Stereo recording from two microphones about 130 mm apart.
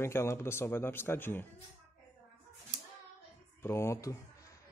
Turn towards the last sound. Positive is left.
turn(degrees=25)  # may be behind; listen again after turning